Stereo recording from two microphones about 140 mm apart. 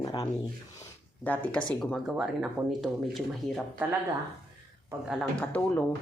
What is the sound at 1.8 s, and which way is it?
Speech, 5° right (ahead or behind).